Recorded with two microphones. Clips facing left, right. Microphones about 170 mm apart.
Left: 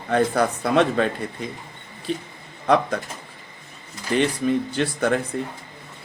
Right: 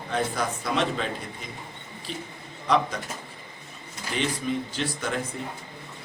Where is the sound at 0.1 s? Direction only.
60° left (ahead or behind).